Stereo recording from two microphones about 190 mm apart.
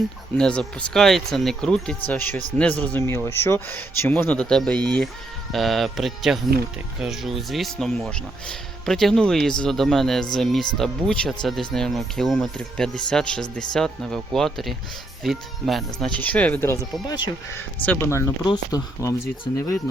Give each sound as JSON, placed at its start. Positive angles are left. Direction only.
{"t": 0.3, "sound": "speech", "side_deg": 5}
{"t": 17.1, "sound": "speech", "side_deg": 20}
{"t": 17.8, "sound": "speech", "side_deg": 15}